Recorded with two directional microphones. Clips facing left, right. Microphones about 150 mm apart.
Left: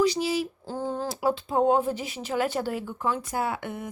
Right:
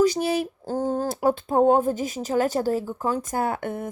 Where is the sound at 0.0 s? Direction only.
50° right (ahead or behind).